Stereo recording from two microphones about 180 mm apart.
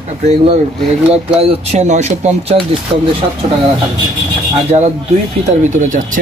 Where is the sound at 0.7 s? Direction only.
5° right (ahead or behind).